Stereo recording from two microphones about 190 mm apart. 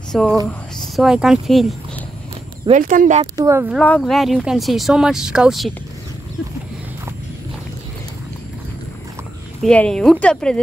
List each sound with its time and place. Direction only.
0.1 s speech: centre (ahead or behind)
2.7 s speech: 45° right (ahead or behind)
3.3 s speech: 15° right (ahead or behind)
3.7 s speech: 5° left (ahead or behind)
9.6 s speech: 5° left (ahead or behind)